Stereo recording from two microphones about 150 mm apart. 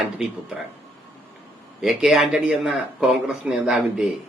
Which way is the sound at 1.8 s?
5° right (ahead or behind).